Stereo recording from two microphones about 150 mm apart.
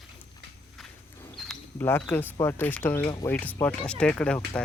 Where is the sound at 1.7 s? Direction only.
15° left (ahead or behind).